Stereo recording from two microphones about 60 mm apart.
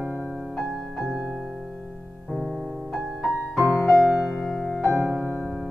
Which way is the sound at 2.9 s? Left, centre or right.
Centre.